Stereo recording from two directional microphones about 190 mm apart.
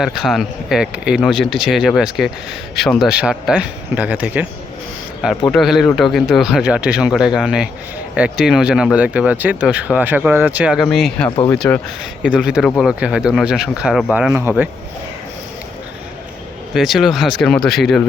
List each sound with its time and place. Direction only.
0.0 s speech: centre (ahead or behind)
5.5 s speech: centre (ahead or behind)
11.3 s speech: 20° left (ahead or behind)
11.5 s speech: centre (ahead or behind)
16.7 s speech: centre (ahead or behind)